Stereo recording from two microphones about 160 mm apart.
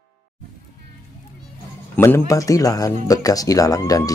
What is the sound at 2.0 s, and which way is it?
Speech, 20° left (ahead or behind).